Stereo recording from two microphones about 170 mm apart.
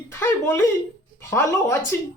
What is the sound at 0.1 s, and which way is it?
Speech, 15° left (ahead or behind).